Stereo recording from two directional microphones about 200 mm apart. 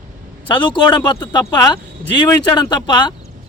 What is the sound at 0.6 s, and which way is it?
A man's voice, 20° left (ahead or behind).